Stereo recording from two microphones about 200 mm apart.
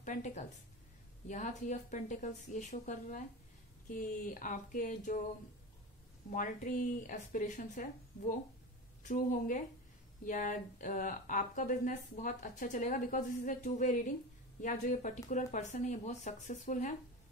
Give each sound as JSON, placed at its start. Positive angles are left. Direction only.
{"t": 0.0, "sound": "speech", "side_deg": 40}
{"t": 6.3, "sound": "speech", "side_deg": 40}